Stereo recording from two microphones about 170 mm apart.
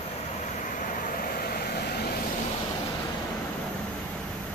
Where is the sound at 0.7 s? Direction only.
55° left (ahead or behind).